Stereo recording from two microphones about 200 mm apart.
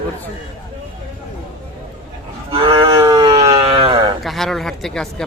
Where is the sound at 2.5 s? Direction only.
25° right (ahead or behind).